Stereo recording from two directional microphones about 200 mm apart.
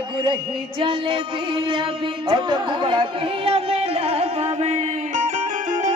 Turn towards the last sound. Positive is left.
turn(degrees=-40)  # may be behind; listen again after turning